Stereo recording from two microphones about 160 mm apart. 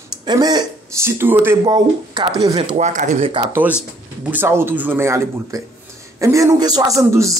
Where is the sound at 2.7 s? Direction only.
50° right (ahead or behind).